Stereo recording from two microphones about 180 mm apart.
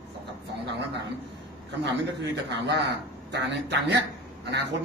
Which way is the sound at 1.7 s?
70° right (ahead or behind).